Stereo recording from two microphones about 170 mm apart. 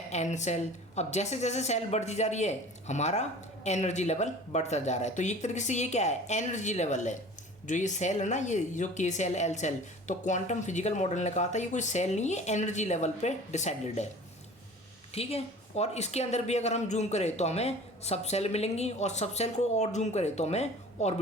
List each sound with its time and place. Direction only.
0.1 s a woman's voice: 45° left (ahead or behind)
15.1 s speech: 35° left (ahead or behind)